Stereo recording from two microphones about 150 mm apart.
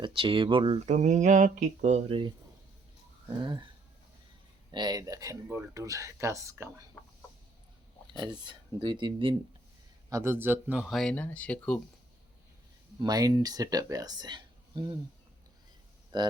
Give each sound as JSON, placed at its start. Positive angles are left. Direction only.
{"t": 0.0, "sound": "speech", "side_deg": -35}
{"t": 2.0, "sound": "speech", "side_deg": -35}
{"t": 3.4, "sound": "speech", "side_deg": -35}
{"t": 4.7, "sound": "speech", "side_deg": -30}
{"t": 8.0, "sound": "speech", "side_deg": -30}
{"t": 10.1, "sound": "speech", "side_deg": -15}
{"t": 10.9, "sound": "speech", "side_deg": 5}
{"t": 13.0, "sound": "speech", "side_deg": -25}
{"t": 16.1, "sound": "speech", "side_deg": -30}